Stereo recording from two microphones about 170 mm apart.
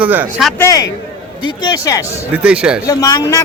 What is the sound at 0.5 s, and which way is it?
A man's voice, 15° left (ahead or behind).